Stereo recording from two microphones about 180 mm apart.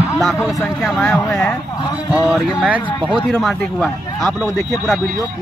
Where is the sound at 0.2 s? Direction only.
Centre (ahead or behind).